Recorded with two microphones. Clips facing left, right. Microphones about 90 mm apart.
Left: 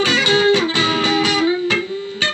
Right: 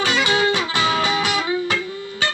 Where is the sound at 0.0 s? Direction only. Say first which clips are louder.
Left 3 dB; 45° right (ahead or behind).